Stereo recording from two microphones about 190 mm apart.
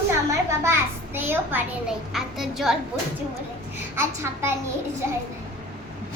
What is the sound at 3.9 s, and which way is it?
Speech, 15° right (ahead or behind).